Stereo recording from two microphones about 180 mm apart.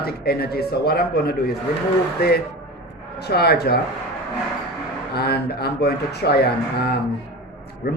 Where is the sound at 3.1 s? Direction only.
65° left (ahead or behind).